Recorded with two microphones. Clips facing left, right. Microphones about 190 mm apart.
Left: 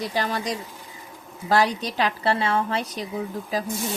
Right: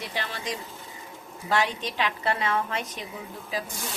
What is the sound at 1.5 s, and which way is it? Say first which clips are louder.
A woman's voice: left 5 dB; 40° left (ahead or behind).